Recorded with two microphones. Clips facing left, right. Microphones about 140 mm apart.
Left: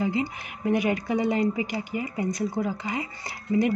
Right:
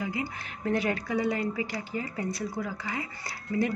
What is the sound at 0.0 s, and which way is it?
Speech, 25° left (ahead or behind).